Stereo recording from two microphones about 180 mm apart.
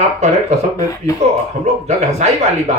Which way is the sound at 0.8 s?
20° left (ahead or behind).